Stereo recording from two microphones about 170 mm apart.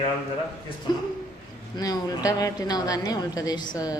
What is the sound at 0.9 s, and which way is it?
A woman's voice, 25° left (ahead or behind).